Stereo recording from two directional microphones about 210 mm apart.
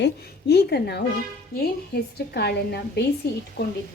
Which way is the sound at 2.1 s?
50° left (ahead or behind).